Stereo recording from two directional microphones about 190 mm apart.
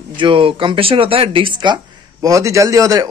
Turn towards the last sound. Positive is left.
turn(degrees=-20)  # may be behind; listen again after turning